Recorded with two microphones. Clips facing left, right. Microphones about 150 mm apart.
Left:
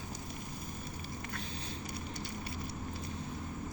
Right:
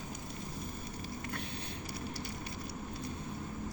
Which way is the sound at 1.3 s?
60° right (ahead or behind).